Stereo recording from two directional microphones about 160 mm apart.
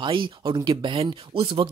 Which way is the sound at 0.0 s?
30° right (ahead or behind).